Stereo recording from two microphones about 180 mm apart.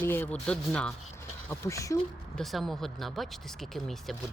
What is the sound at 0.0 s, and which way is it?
Speech, 10° left (ahead or behind).